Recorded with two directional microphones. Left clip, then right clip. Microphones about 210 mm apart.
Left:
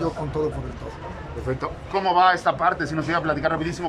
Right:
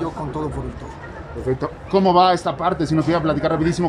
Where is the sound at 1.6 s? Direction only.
20° right (ahead or behind).